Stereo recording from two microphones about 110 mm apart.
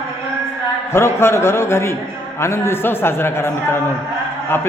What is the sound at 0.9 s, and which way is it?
A man's voice, 25° left (ahead or behind).